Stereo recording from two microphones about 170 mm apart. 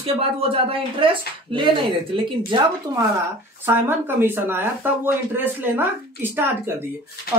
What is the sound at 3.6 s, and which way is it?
Speech, 15° right (ahead or behind).